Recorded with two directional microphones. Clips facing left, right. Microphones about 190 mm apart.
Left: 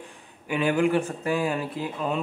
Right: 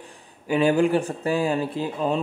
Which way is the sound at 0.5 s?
35° right (ahead or behind).